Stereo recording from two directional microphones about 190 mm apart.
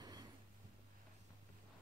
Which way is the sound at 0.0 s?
20° right (ahead or behind).